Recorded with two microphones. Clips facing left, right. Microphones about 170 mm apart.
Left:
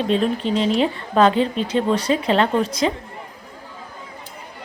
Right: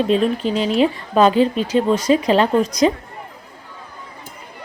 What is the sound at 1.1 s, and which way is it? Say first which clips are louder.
Speech: right 1 dB; 10° right (ahead or behind).